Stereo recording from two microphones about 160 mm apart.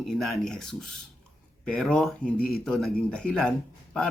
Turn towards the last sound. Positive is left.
turn(degrees=5)  # may be behind; listen again after turning